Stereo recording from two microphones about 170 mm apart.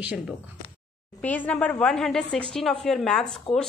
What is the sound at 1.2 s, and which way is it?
A woman's voice, 10° left (ahead or behind).